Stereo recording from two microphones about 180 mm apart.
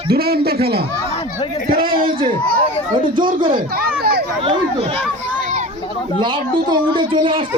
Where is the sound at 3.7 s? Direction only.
60° right (ahead or behind).